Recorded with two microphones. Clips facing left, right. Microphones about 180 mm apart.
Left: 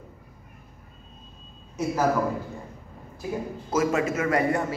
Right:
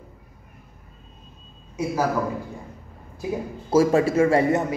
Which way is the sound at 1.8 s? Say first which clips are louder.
Right 1 dB; 10° right (ahead or behind).